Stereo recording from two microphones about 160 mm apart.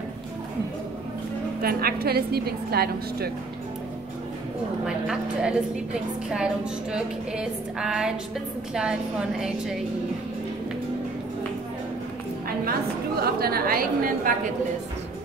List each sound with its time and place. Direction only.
1.6 s a woman's voice: 70° right (ahead or behind)
4.8 s music: 5° right (ahead or behind)
12.6 s a woman's voice: 75° right (ahead or behind)